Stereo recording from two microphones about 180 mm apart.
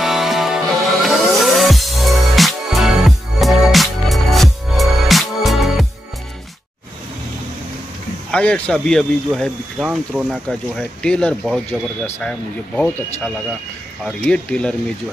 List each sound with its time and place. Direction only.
0.0 s music: centre (ahead or behind)
8.3 s speech: 5° left (ahead or behind)